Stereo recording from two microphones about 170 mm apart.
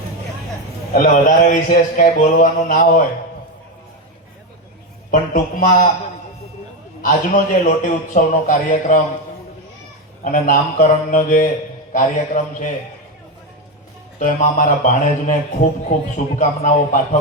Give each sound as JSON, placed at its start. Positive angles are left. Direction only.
{"t": 0.9, "sound": "speech", "side_deg": 50}
{"t": 5.1, "sound": "speech", "side_deg": 50}
{"t": 7.0, "sound": "speech", "side_deg": 50}
{"t": 10.2, "sound": "speech", "side_deg": 50}
{"t": 14.2, "sound": "speech", "side_deg": 50}